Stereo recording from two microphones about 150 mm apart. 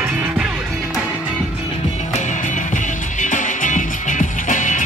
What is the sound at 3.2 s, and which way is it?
Music, 55° left (ahead or behind).